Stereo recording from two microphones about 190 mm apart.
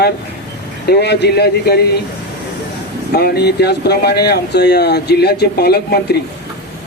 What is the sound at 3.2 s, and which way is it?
Speech, 55° left (ahead or behind).